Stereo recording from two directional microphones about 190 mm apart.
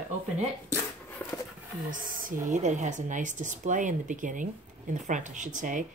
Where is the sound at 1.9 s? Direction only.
45° right (ahead or behind).